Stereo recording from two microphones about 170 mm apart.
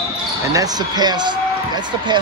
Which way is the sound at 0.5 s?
20° right (ahead or behind).